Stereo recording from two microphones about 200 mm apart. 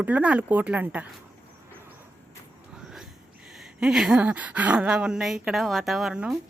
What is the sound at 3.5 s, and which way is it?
Speech, 5° right (ahead or behind).